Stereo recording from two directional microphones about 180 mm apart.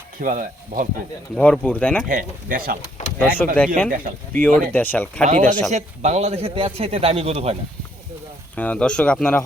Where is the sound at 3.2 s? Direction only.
10° left (ahead or behind).